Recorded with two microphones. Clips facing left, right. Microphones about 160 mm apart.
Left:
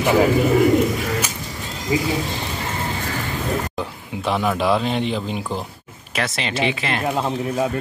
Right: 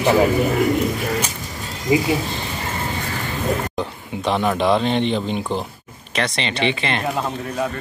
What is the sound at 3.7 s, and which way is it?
Speech, 5° left (ahead or behind).